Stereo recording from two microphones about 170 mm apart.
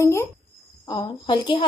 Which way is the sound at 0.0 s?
15° left (ahead or behind).